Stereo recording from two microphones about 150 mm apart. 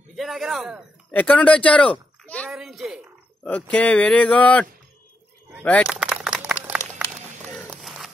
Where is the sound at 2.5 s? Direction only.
5° right (ahead or behind).